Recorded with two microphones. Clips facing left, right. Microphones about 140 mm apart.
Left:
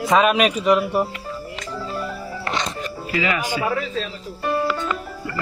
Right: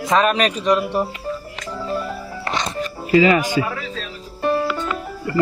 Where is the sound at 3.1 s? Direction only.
35° right (ahead or behind).